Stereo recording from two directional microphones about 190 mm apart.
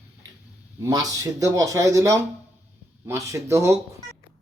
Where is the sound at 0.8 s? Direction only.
20° right (ahead or behind).